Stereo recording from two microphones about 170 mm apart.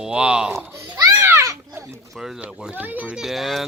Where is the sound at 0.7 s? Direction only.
20° right (ahead or behind).